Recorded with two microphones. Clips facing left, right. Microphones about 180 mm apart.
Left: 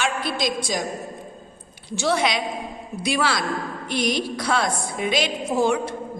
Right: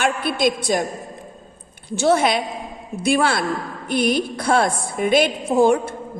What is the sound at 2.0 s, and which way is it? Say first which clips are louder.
A woman's voice: right 5 dB; 50° right (ahead or behind).